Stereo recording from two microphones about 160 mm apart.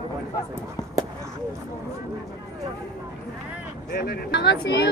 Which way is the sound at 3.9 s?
80° left.